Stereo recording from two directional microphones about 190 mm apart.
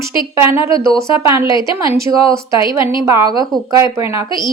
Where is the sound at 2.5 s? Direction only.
25° left (ahead or behind).